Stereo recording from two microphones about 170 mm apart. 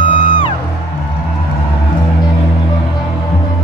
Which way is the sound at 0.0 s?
30° left (ahead or behind).